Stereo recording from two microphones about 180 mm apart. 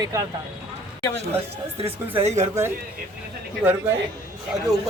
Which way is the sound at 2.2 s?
40° right (ahead or behind).